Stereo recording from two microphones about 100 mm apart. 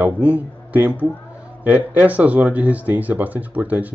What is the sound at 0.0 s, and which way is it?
Speech, 15° right (ahead or behind).